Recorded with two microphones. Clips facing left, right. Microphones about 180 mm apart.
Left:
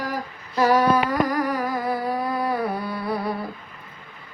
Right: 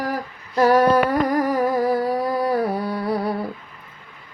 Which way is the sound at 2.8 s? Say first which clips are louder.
Right 4 dB; 40° right (ahead or behind).